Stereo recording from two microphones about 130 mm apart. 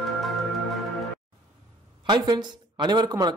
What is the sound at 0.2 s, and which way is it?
Music, centre (ahead or behind).